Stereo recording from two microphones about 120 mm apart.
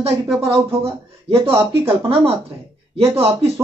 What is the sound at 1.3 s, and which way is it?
Speech, 55° right (ahead or behind).